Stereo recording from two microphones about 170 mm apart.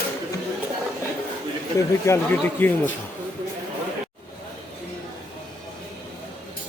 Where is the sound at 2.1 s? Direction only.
20° left (ahead or behind).